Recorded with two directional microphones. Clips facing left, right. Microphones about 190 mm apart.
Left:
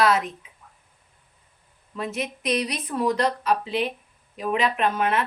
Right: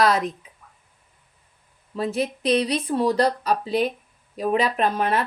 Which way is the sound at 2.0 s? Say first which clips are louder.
Right 5 dB; 35° right (ahead or behind).